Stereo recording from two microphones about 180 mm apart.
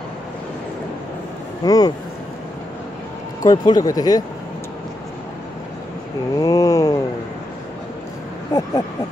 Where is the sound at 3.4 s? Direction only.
20° left (ahead or behind).